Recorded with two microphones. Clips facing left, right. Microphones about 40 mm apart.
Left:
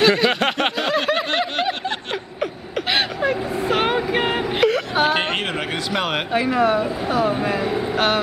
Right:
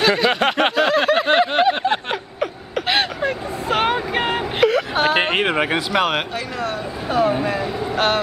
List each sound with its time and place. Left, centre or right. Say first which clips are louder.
0.0 s a sound: even; centre
2.4 s vehicle: right 2 dB; centre
5.2 s a sound: right 5 dB; centre
5.9 s speech: right 3 dB; centre
6.3 s speech: left 7 dB; centre
7.1 s speech: right 4 dB; centre